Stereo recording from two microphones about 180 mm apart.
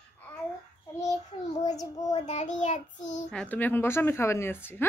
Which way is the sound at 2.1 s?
40° left (ahead or behind).